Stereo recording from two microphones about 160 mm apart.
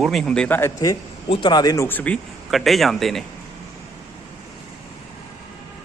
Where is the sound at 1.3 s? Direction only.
30° left (ahead or behind); by 3.3 s centre (ahead or behind).